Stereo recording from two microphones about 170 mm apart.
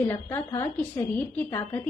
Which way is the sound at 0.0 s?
15° left (ahead or behind).